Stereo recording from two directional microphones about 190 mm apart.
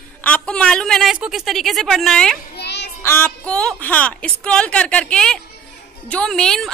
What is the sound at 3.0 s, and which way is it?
A woman's voice, 10° left (ahead or behind).